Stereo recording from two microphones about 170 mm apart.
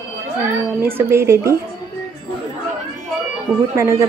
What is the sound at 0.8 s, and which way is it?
Speech, 15° right (ahead or behind).